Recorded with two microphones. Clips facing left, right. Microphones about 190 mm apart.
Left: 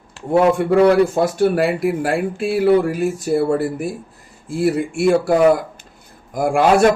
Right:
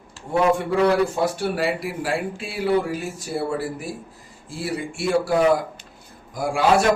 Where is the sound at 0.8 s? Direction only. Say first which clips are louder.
Left 7 dB; 50° left (ahead or behind).